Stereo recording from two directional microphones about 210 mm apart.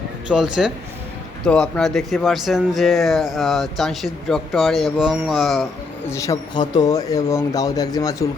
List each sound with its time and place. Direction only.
0.3 s speech: 5° right (ahead or behind)
1.5 s speech: 5° left (ahead or behind)
6.1 s speech: 15° left (ahead or behind)